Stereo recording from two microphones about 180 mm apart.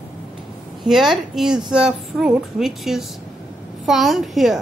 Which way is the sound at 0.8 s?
Centre (ahead or behind).